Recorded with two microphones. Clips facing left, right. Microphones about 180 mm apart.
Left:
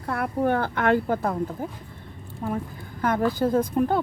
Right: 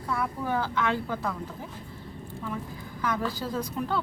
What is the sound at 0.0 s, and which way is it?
A woman's voice, 60° left (ahead or behind).